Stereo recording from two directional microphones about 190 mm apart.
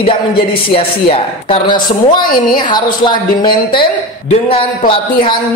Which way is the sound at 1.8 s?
45° left (ahead or behind).